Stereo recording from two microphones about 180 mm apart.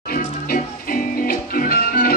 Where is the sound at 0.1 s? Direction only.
55° left (ahead or behind).